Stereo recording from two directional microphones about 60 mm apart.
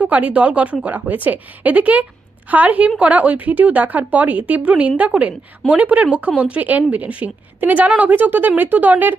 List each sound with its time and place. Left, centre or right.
0.0 s speech: right